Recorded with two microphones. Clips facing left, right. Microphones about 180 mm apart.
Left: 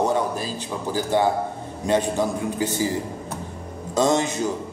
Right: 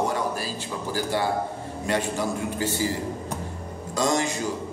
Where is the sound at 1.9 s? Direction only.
20° left (ahead or behind).